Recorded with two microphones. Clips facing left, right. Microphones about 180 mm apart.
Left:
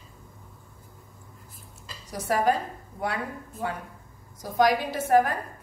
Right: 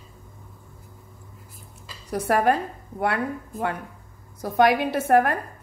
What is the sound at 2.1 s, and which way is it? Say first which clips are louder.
A woman's voice: right 3 dB; 60° right (ahead or behind).